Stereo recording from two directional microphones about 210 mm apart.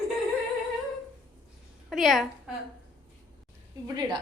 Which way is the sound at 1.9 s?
Centre (ahead or behind).